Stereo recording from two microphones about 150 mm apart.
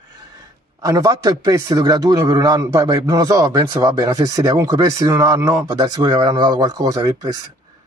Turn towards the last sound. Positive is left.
turn(degrees=-25)  # may be behind; listen again after turning